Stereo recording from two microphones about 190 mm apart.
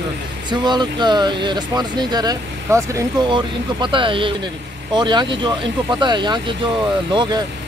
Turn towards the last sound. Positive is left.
turn(degrees=-20)  # may be behind; listen again after turning